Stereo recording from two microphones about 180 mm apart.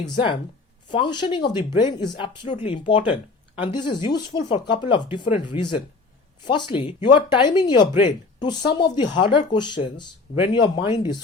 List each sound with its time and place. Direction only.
0.9 s speech: 25° left (ahead or behind)